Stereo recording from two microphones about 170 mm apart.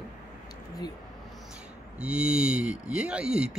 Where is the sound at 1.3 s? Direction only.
5° right (ahead or behind).